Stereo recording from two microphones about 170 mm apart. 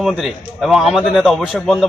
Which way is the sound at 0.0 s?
Centre (ahead or behind).